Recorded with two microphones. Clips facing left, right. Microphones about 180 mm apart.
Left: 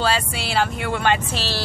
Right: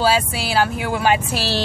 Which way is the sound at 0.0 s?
5° right (ahead or behind).